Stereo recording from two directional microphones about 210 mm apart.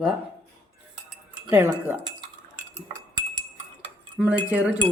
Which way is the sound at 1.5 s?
10° right (ahead or behind).